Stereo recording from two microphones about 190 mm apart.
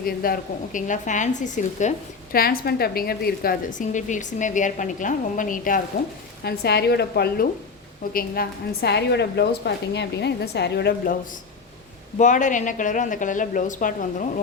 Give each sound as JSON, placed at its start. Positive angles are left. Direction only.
{"t": 0.0, "sound": "speech", "side_deg": 50}
{"t": 2.3, "sound": "a woman's voice", "side_deg": 50}
{"t": 6.4, "sound": "a woman's voice", "side_deg": 60}
{"t": 12.1, "sound": "speech", "side_deg": 40}